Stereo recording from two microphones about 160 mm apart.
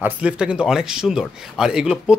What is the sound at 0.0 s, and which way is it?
A man's voice, 5° right (ahead or behind).